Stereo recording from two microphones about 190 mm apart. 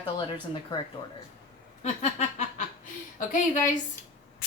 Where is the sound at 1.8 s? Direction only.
35° left (ahead or behind).